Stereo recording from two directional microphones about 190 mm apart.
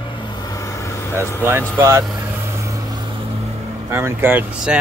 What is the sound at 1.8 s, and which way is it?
Speech, 15° right (ahead or behind).